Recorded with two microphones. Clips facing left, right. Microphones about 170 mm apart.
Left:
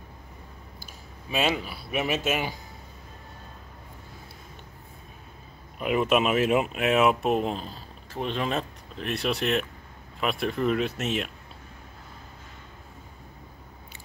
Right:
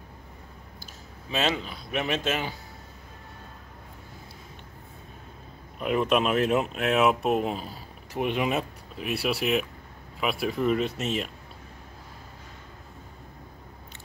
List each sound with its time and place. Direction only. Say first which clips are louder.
1.3 s speech: left 1 dB; 10° left (ahead or behind)
5.8 s speech: left 1 dB; 5° left (ahead or behind)